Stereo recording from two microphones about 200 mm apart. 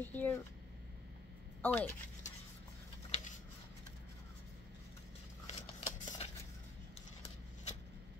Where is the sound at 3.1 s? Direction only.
35° left (ahead or behind).